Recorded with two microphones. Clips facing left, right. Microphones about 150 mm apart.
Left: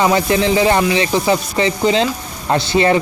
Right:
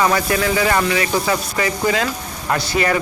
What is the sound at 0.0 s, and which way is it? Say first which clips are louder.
Speech: left 3 dB; 25° left (ahead or behind).